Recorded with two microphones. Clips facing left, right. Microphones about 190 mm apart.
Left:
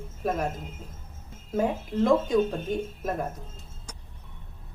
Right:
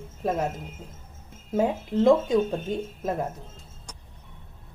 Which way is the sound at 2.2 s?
25° right (ahead or behind).